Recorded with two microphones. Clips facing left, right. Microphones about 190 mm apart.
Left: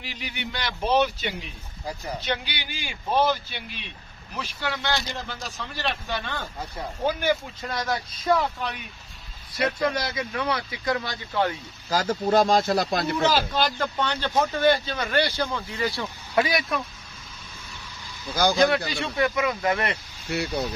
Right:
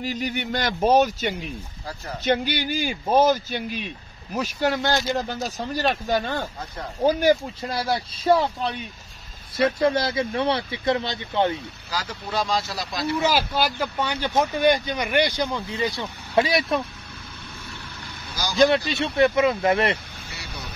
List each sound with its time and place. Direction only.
0.0 s speech: 45° right (ahead or behind); by 11.5 s 20° right (ahead or behind)
11.9 s speech: 45° left (ahead or behind)
13.2 s speech: 10° right (ahead or behind); by 16.8 s 25° right (ahead or behind)
18.2 s speech: 60° left (ahead or behind)
18.9 s speech: 25° right (ahead or behind)
20.2 s speech: 60° left (ahead or behind)